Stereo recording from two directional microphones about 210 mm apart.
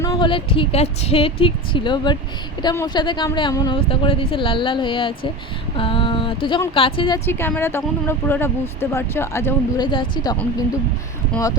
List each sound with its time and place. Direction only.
0.0 s speech: 20° left (ahead or behind)
5.7 s a sound: 25° left (ahead or behind)
6.7 s speech: 25° left (ahead or behind)
7.3 s speech: 10° left (ahead or behind)